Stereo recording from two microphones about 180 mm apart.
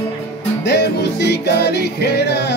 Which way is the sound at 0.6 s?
70° left (ahead or behind).